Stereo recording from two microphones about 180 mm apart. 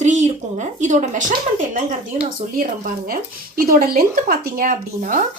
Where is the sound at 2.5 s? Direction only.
50° right (ahead or behind).